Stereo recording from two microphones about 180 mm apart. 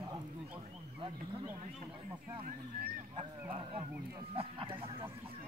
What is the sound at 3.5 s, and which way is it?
Speech, 30° right (ahead or behind).